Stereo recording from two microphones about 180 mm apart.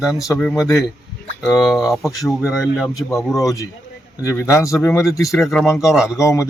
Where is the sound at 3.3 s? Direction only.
20° left (ahead or behind).